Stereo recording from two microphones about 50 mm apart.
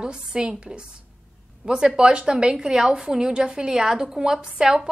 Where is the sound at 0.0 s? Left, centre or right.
Centre.